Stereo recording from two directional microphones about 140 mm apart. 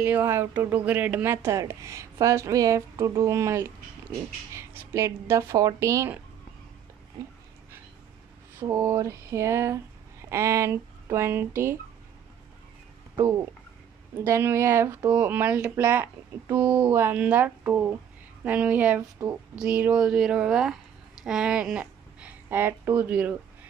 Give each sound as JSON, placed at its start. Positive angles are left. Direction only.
{"t": 0.0, "sound": "speech", "side_deg": -15}
{"t": 8.5, "sound": "speech", "side_deg": -20}
{"t": 14.2, "sound": "a woman's voice", "side_deg": -15}